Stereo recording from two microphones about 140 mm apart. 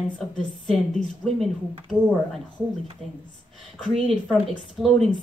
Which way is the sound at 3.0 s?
50° right (ahead or behind).